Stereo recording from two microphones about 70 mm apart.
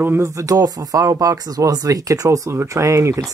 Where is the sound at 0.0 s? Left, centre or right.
Right.